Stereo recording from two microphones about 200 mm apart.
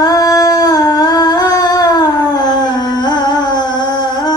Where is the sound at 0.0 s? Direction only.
20° left (ahead or behind).